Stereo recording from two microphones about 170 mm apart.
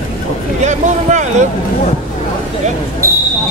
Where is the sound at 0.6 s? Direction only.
45° right (ahead or behind).